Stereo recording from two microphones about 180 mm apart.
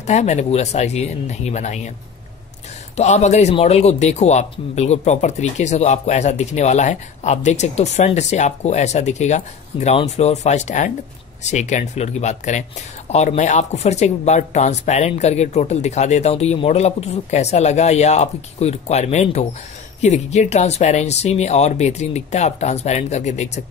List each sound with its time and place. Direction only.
0.0 s a man's voice: 40° left (ahead or behind)
3.0 s a man's voice: 40° left (ahead or behind)